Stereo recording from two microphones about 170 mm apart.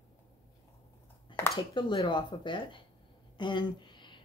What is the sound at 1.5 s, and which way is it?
Speech, 25° left (ahead or behind).